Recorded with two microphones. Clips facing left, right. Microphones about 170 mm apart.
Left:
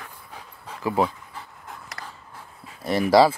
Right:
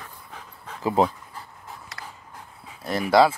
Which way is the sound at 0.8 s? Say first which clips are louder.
Right 2 dB; 20° right (ahead or behind).